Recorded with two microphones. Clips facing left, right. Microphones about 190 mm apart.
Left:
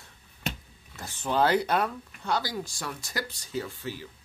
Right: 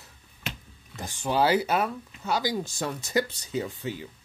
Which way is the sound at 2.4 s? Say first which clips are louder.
Right 5 dB; 20° right (ahead or behind).